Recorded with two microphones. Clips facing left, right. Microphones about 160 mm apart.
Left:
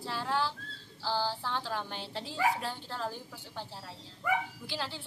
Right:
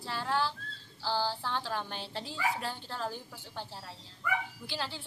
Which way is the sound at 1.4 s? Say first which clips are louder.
Even; centre (ahead or behind).